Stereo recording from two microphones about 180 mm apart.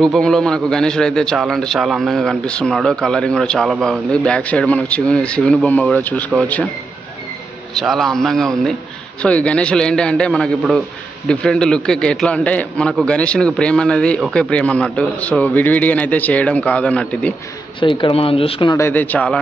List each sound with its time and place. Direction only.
0.0 s a man's voice: centre (ahead or behind)
7.7 s a man's voice: centre (ahead or behind)
17.7 s speech: 25° left (ahead or behind)
18.8 s a man's voice: 10° left (ahead or behind)